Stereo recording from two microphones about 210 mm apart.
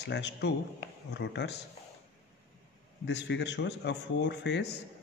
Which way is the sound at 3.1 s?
55° left (ahead or behind).